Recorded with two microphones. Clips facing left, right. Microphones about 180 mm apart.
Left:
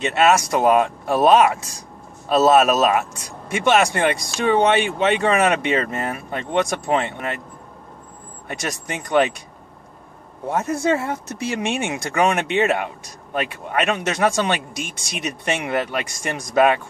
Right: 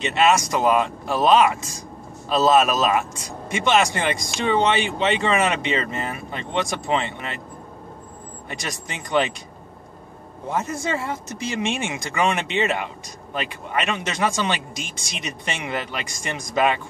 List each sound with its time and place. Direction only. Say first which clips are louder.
0.0 s speech: left 2 dB; 55° left (ahead or behind)
8.5 s speech: left 5 dB; 55° left (ahead or behind)
10.5 s speech: left 5 dB; 60° left (ahead or behind)